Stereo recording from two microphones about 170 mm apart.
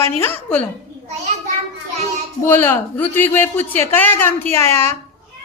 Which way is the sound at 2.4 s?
10° left (ahead or behind).